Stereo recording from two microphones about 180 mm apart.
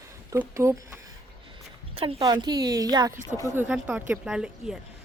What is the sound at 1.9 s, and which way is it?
Speech, 30° right (ahead or behind).